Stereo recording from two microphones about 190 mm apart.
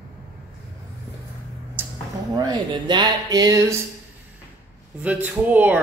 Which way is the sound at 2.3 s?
20° right (ahead or behind).